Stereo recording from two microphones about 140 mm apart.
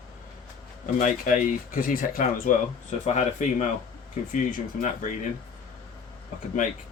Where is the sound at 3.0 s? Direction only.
60° left (ahead or behind).